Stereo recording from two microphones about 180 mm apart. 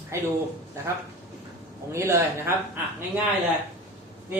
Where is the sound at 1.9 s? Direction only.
15° right (ahead or behind).